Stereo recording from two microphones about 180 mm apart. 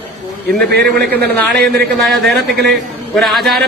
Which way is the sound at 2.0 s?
Centre (ahead or behind).